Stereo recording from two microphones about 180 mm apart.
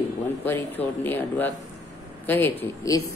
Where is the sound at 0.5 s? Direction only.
10° left (ahead or behind).